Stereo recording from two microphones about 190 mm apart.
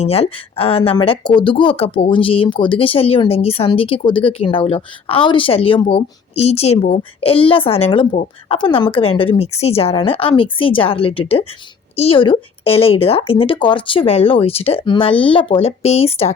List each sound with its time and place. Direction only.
0.0 s speech: 30° left (ahead or behind)